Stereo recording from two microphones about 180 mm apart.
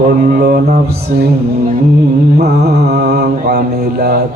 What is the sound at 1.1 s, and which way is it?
Speech, 45° right (ahead or behind).